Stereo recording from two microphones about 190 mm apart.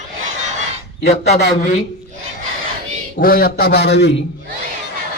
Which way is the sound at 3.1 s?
50° left (ahead or behind).